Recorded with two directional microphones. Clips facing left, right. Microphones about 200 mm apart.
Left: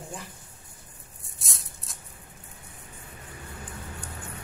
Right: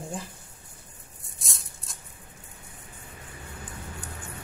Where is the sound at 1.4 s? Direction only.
Centre (ahead or behind).